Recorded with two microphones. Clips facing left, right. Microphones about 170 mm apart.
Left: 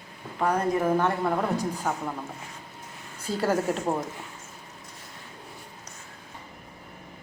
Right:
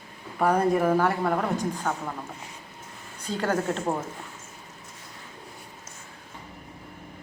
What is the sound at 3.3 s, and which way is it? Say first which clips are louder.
Speech: left 1 dB; 5° left (ahead or behind).